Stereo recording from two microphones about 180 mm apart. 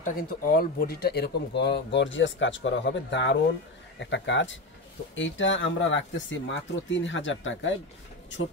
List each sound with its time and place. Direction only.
0.0 s speech: 55° left (ahead or behind); by 7.7 s 90° left